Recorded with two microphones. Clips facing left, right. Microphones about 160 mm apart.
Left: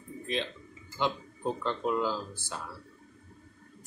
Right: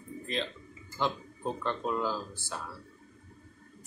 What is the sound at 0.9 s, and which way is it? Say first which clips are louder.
Speech: left 1 dB; 15° left (ahead or behind).